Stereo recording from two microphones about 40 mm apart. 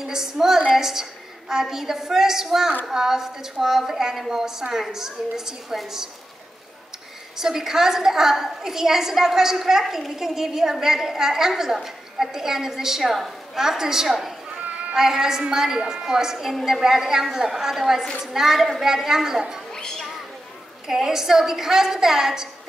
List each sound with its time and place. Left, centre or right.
0.0 s a woman's voice: centre
7.3 s a woman's voice: centre
14.6 s a sound: right
15.0 s a woman's voice: centre
19.7 s a sound: centre
20.8 s a woman's voice: centre